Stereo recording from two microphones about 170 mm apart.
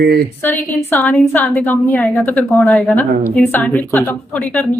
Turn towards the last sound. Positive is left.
turn(degrees=10)  # may be behind; listen again after turning